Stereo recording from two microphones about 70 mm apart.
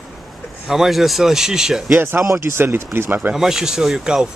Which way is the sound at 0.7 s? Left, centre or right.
Centre.